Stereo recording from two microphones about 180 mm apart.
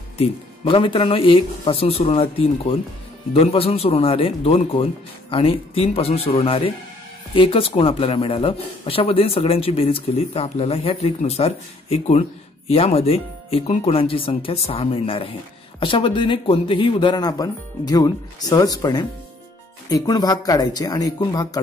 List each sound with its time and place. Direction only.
0.2 s speech: 30° left (ahead or behind)